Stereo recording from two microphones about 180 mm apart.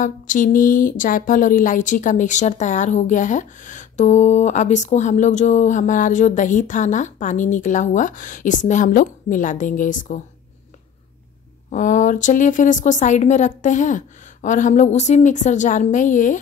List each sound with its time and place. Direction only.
0.0 s speech: 45° left (ahead or behind)
11.7 s speech: 45° left (ahead or behind)